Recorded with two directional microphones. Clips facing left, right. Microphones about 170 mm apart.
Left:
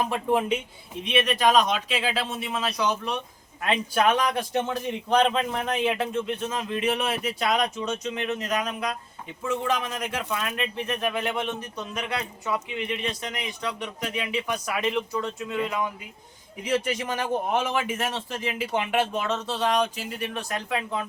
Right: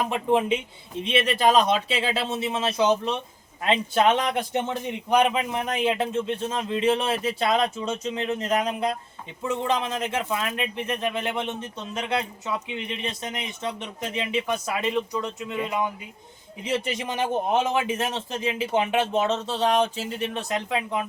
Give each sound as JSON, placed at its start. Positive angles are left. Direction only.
{"t": 0.1, "sound": "a man's voice", "side_deg": -20}
{"t": 13.0, "sound": "a man's voice", "side_deg": -20}